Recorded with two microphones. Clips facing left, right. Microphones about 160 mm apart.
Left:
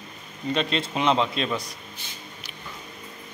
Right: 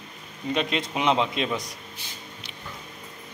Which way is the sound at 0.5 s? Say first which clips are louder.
Left 1 dB; 15° right (ahead or behind).